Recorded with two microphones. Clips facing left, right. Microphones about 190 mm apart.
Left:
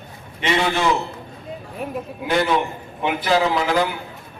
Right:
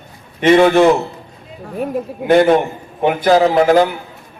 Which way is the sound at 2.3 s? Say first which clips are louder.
Right 9 dB; 50° right (ahead or behind).